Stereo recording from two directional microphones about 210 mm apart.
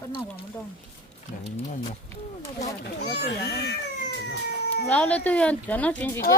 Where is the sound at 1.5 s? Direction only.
30° left (ahead or behind).